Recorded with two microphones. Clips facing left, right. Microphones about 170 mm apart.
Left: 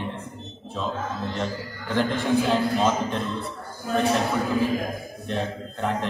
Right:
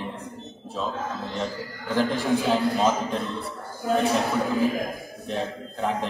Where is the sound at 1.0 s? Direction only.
Centre (ahead or behind).